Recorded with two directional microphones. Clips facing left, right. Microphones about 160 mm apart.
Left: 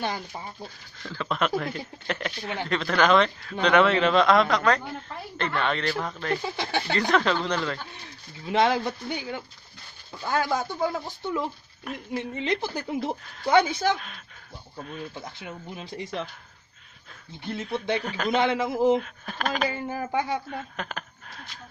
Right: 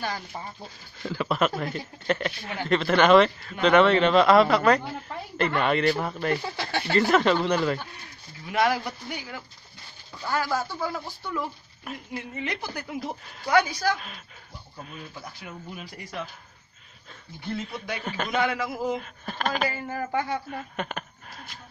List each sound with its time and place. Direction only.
1.1 s a woman's voice: 10° right (ahead or behind)
6.4 s a woman's voice: 15° left (ahead or behind)
6.9 s a woman's voice: 5° right (ahead or behind)
8.5 s speech: 25° left (ahead or behind)
11.9 s speech: 5° right (ahead or behind)
12.2 s speech: 25° left (ahead or behind)
15.1 s speech: 25° left (ahead or behind)
18.0 s speech: centre (ahead or behind)
18.3 s speech: 25° left (ahead or behind)
18.9 s speech: centre (ahead or behind)
19.7 s a woman's voice: 15° left (ahead or behind)
20.4 s speech: 5° right (ahead or behind)